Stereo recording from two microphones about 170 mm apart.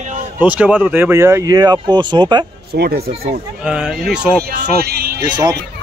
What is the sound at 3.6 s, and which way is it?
Speech, 5° right (ahead or behind).